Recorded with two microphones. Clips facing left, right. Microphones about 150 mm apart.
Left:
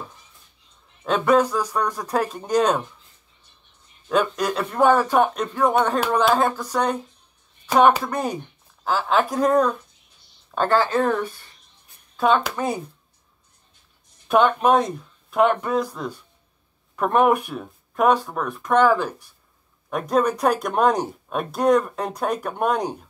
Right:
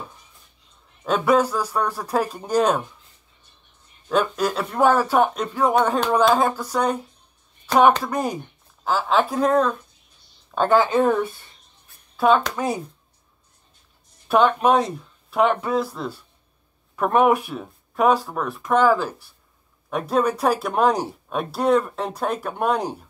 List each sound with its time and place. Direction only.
1.0 s speech: 5° right (ahead or behind)
4.1 s speech: 5° right (ahead or behind)
7.7 s speech: 10° left (ahead or behind)
8.0 s speech: 10° right (ahead or behind)
10.7 s speech: 20° right (ahead or behind); by 12.8 s centre (ahead or behind)
14.2 s speech: centre (ahead or behind)